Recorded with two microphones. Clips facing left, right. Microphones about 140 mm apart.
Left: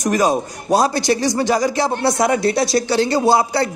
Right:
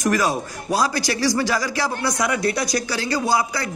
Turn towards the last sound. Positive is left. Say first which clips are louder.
# left 6 dB
turn(degrees=30)  # may be behind; listen again after turning